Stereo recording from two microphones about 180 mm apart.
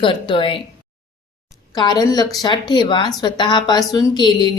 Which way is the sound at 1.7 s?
25° left (ahead or behind).